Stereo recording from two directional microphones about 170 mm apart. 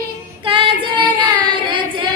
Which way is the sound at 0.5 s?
30° right (ahead or behind).